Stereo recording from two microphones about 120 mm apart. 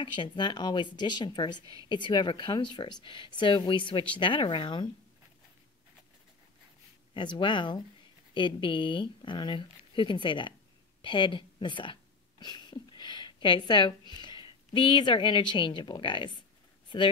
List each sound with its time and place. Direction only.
0.0 s speech: 40° left (ahead or behind)
1.6 s a woman's voice: 30° right (ahead or behind)
1.9 s speech: 40° left (ahead or behind)
7.2 s speech: 40° left (ahead or behind)